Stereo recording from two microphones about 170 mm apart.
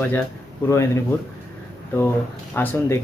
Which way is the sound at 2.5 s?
15° left (ahead or behind).